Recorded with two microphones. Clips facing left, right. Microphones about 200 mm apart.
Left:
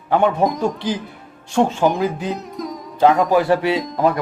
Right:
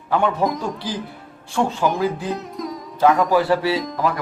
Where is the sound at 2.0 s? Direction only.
20° left (ahead or behind).